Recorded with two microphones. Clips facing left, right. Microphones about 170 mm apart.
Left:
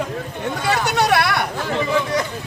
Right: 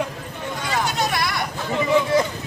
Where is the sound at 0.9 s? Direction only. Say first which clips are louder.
Left 6 dB; 70° left (ahead or behind).